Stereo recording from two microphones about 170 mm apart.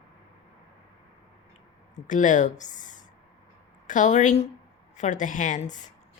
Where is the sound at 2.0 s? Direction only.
50° left (ahead or behind).